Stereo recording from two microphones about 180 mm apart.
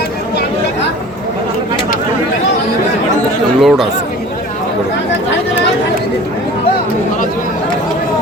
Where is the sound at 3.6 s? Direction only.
Centre (ahead or behind).